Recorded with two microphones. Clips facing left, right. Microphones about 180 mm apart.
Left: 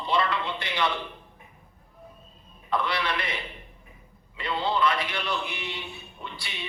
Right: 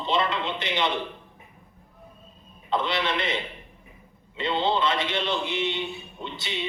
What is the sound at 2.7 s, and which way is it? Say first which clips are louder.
A man's voice: right 2 dB; 20° right (ahead or behind).